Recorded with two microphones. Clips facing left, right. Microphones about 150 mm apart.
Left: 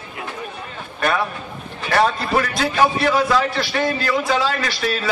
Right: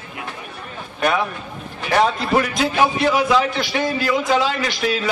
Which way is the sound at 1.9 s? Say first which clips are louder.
Right 1 dB; 15° right (ahead or behind).